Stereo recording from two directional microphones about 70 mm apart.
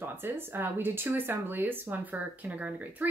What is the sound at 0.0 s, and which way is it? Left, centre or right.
A woman's voice, right.